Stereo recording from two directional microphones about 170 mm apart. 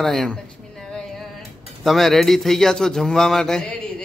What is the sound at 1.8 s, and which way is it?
A man's voice, centre (ahead or behind).